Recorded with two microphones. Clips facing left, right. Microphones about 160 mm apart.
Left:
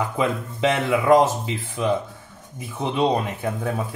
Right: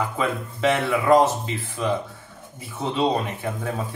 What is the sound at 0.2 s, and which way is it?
Speech, 20° left (ahead or behind).